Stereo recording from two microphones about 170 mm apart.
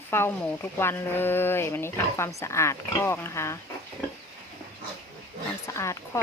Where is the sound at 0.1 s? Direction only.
10° left (ahead or behind).